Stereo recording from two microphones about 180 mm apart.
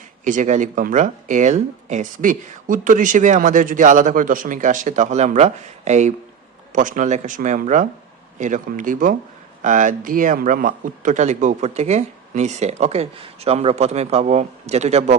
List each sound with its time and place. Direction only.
0.3 s speech: 45° right (ahead or behind)